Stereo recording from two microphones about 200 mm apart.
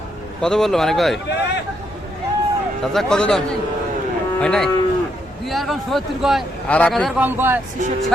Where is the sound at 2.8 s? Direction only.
Centre (ahead or behind).